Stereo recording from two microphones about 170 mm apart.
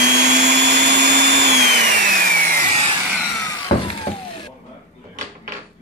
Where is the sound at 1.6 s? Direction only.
55° right (ahead or behind).